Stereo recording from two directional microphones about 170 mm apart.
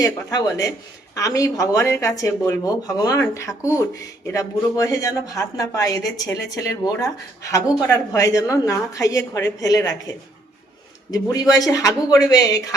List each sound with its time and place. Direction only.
0.0 s speech: 20° left (ahead or behind)
11.1 s speech: 20° left (ahead or behind)